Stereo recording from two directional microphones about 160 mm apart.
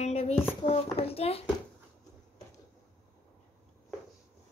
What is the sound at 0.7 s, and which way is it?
Speech, 40° left (ahead or behind).